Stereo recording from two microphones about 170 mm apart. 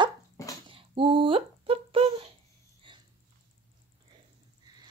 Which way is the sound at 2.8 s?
30° right (ahead or behind).